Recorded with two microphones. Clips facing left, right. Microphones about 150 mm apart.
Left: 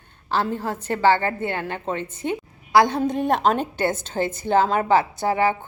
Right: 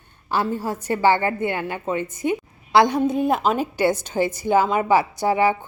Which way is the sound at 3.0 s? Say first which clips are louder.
Even; 5° right (ahead or behind).